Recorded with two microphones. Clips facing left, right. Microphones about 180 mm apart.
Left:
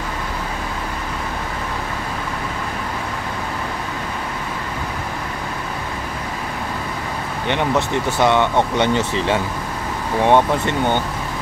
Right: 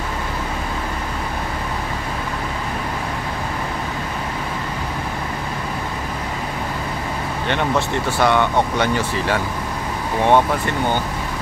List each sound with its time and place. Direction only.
7.4 s speech: 20° left (ahead or behind)